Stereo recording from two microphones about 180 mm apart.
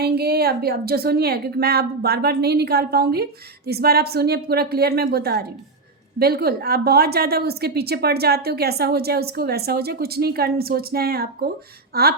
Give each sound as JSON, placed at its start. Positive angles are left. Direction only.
{"t": 0.0, "sound": "a woman's voice", "side_deg": -60}